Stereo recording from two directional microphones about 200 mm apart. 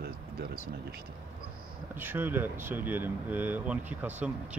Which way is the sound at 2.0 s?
10° right (ahead or behind).